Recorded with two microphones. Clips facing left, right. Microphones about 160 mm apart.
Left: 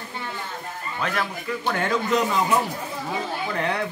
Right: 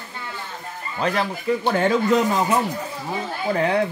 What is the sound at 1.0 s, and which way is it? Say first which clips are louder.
Speech: right 5 dB; 30° right (ahead or behind).